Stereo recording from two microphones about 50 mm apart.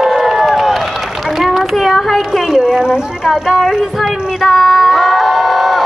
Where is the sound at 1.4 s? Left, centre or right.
Centre.